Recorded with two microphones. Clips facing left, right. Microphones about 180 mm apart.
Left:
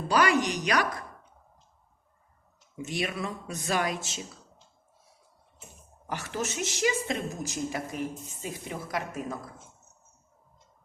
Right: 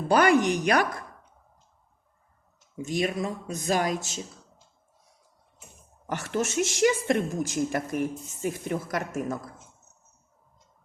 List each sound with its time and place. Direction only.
0.1 s speech: 55° right (ahead or behind)
2.8 s speech: 45° right (ahead or behind)
6.1 s a woman's voice: 65° right (ahead or behind)